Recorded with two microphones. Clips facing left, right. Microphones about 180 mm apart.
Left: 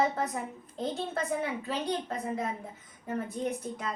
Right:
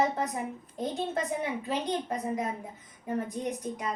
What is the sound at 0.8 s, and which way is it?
A woman's voice, 15° right (ahead or behind).